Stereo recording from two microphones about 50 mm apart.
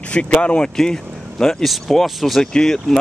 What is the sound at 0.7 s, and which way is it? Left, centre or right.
Speech, centre.